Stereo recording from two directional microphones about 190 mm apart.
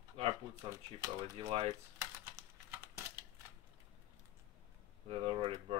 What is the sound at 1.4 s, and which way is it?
Speech, 30° right (ahead or behind).